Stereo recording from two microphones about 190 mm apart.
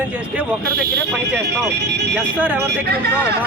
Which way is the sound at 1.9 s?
60° right (ahead or behind).